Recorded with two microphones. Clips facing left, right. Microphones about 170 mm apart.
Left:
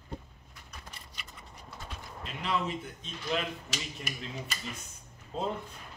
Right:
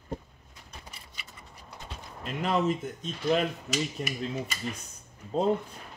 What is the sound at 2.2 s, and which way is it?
Speech, 45° right (ahead or behind).